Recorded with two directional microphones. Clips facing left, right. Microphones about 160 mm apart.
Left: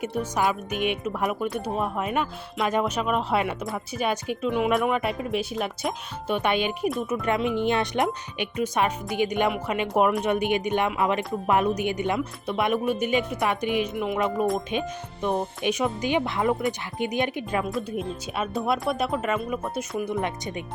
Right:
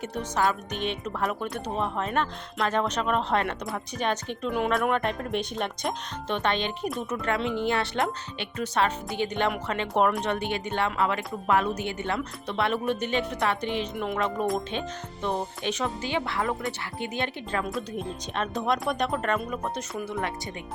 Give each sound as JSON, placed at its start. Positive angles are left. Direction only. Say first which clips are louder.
{"t": 0.0, "sound": "speech", "louder": "left 2 dB", "side_deg": 10}
{"t": 14.7, "sound": "speech", "louder": "left 4 dB", "side_deg": 10}
{"t": 20.0, "sound": "speech", "louder": "left 5 dB", "side_deg": 20}